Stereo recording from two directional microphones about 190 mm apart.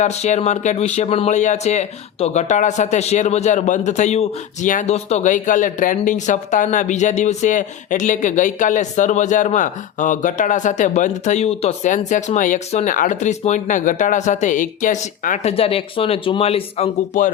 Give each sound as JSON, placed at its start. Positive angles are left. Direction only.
{"t": 0.0, "sound": "speech", "side_deg": 35}
{"t": 15.5, "sound": "speech", "side_deg": 30}